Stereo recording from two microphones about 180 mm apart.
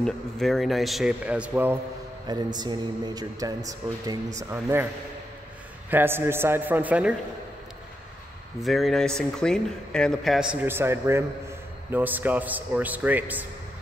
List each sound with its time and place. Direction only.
0.0 s speech: centre (ahead or behind)
2.2 s a man's voice: 25° right (ahead or behind)
5.9 s a man's voice: 10° right (ahead or behind)
8.5 s a man's voice: centre (ahead or behind)